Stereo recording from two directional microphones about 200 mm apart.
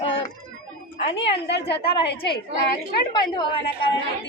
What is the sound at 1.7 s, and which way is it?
Speech, 50° left (ahead or behind).